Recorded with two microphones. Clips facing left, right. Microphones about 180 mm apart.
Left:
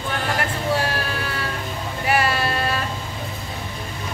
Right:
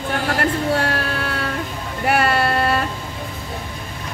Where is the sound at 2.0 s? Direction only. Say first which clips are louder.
Right 3 dB; 60° right (ahead or behind).